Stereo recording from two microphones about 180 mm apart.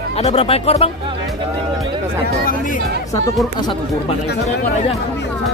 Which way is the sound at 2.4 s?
45° left (ahead or behind).